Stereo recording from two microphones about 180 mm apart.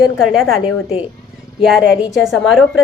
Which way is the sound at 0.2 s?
5° right (ahead or behind).